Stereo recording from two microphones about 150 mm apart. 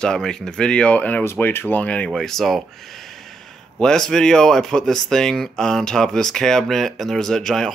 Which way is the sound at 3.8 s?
5° left (ahead or behind).